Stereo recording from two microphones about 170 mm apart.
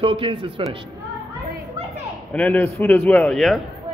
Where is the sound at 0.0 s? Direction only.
30° right (ahead or behind).